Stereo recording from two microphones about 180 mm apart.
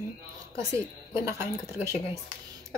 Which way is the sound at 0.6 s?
15° right (ahead or behind).